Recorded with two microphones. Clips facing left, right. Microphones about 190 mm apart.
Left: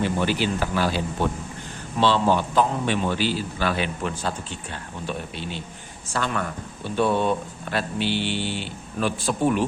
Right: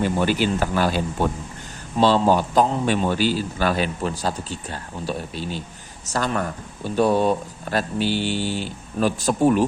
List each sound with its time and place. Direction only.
0.0 s a man's voice: 45° right (ahead or behind)